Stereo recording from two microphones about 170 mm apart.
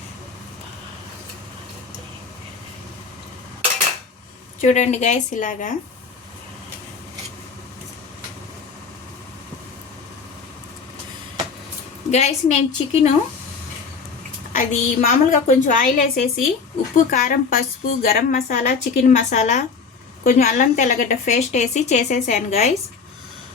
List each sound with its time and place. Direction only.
4.6 s a woman's voice: 45° left (ahead or behind)
12.1 s a woman's voice: 40° left (ahead or behind)
14.5 s a woman's voice: 50° left (ahead or behind)